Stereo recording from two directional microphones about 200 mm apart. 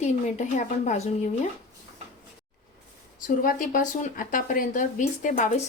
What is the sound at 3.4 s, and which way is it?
Speech, 45° left (ahead or behind).